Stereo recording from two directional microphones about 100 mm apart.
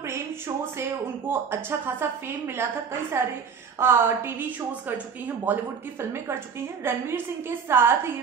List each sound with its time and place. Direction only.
0.7 s a woman's voice: 25° right (ahead or behind)